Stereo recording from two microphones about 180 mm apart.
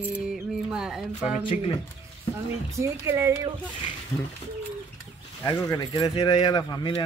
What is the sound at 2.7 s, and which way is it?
Speech, 15° right (ahead or behind).